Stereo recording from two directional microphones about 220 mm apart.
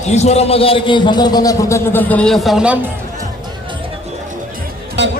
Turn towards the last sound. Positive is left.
turn(degrees=-55)  # may be behind; listen again after turning